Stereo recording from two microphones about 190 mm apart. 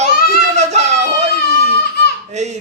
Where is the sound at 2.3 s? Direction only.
35° right (ahead or behind).